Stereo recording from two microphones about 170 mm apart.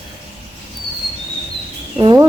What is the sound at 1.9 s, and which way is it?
Speech, 25° right (ahead or behind).